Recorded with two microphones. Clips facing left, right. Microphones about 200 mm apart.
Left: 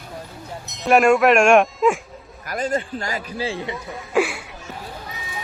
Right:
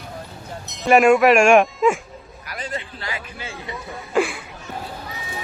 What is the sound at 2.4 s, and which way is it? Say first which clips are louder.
A man's voice: left 8 dB; 45° left (ahead or behind).